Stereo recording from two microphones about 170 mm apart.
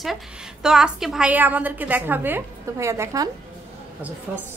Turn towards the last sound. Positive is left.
turn(degrees=-10)  # may be behind; listen again after turning